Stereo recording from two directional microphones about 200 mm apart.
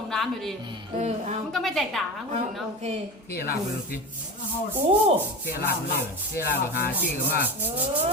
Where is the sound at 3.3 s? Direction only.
50° left (ahead or behind).